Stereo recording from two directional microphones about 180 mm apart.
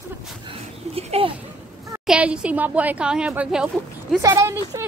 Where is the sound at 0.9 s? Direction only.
35° right (ahead or behind).